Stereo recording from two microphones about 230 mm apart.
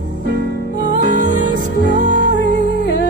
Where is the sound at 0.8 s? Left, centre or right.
Left.